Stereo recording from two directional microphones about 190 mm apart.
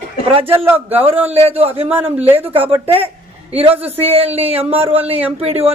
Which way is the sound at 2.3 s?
30° right (ahead or behind).